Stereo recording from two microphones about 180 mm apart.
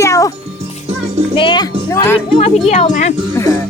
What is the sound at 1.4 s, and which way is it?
Speech, 25° left (ahead or behind).